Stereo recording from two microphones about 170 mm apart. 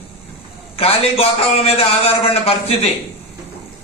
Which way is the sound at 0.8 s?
35° left (ahead or behind).